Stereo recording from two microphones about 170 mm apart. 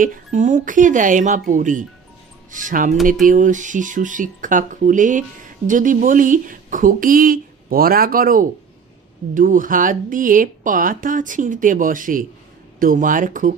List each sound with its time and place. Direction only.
0.0 s speech: 50° right (ahead or behind)